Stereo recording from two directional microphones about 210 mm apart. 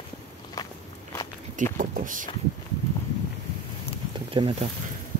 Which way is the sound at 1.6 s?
40° right (ahead or behind).